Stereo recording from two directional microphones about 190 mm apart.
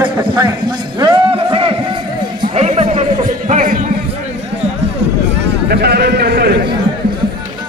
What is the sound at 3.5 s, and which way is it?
Music, 45° right (ahead or behind).